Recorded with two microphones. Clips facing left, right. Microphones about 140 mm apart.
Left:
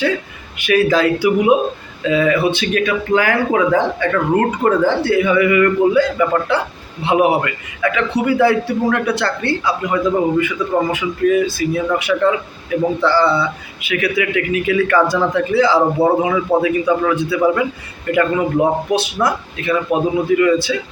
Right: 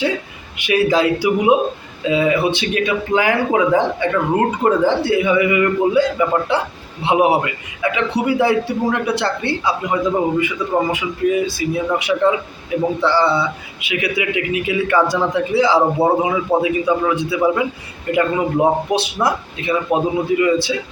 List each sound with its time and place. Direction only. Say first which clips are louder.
0.5 s a man's voice: left 1 dB; 20° right (ahead or behind)